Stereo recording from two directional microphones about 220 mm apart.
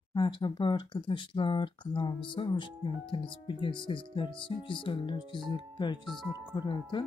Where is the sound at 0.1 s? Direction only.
20° left (ahead or behind).